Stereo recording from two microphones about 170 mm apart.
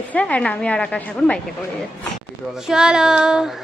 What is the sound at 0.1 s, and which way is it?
A woman's voice, 10° left (ahead or behind).